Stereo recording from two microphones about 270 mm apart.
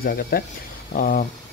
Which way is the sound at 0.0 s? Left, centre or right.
Left.